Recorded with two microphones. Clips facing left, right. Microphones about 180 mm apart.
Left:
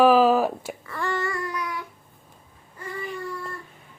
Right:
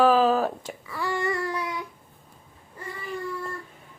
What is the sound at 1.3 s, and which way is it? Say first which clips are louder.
Child singing: right 2 dB; 30° right (ahead or behind).